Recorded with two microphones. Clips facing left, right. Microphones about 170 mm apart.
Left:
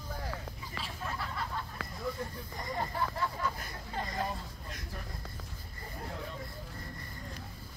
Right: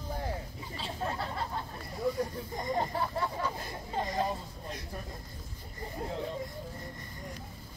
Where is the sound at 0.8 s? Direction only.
30° right (ahead or behind).